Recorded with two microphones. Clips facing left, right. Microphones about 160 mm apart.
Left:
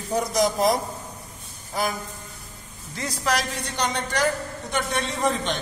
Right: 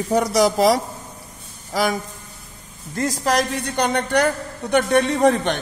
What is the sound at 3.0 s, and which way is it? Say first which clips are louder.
A man's voice: right 6 dB; 45° right (ahead or behind).